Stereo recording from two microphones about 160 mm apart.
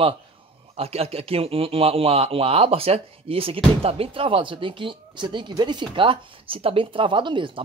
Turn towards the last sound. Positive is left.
turn(degrees=-30)  # may be behind; listen again after turning